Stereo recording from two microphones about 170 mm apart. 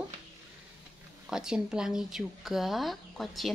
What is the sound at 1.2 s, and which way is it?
Speech, 5° right (ahead or behind).